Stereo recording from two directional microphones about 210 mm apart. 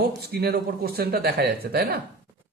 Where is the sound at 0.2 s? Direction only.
50° right (ahead or behind).